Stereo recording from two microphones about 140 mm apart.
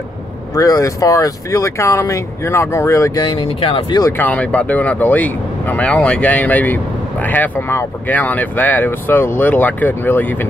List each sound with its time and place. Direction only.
0.6 s speech: 25° left (ahead or behind); by 4.0 s 40° left (ahead or behind)
4.2 s speech: 10° left (ahead or behind)